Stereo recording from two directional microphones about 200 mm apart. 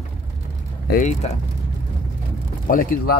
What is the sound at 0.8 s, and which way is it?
Speech, 40° left (ahead or behind).